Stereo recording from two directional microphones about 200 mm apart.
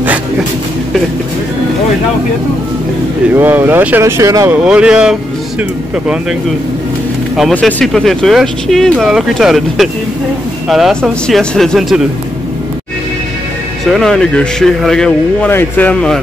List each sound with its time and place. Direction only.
3.3 s speech: 10° right (ahead or behind)
4.6 s speech: 5° right (ahead or behind)
7.3 s speech: centre (ahead or behind)
13.9 s speech: 5° left (ahead or behind)